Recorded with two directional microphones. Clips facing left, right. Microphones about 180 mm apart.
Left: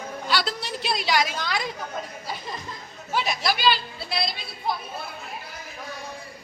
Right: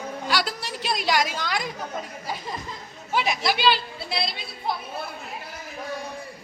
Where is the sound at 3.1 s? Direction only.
20° right (ahead or behind).